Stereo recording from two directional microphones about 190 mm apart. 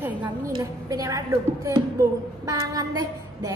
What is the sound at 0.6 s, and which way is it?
A woman's voice, 20° right (ahead or behind).